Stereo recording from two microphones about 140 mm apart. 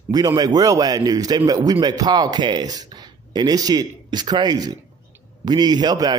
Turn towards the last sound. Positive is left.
turn(degrees=-30)  # may be behind; listen again after turning